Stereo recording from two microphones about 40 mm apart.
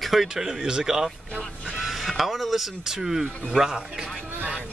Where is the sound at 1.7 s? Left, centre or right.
Centre.